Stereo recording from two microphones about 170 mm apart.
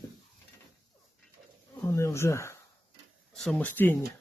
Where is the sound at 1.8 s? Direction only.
15° left (ahead or behind).